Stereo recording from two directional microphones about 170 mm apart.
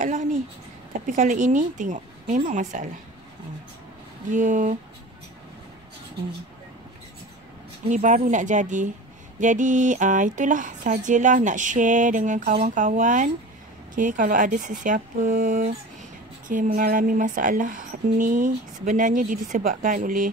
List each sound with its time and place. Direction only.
0.0 s a sound: 50° right (ahead or behind)
1.0 s a woman's voice: 50° right (ahead or behind)
4.3 s a woman's voice: 50° right (ahead or behind)
7.9 s a woman's voice: 45° right (ahead or behind)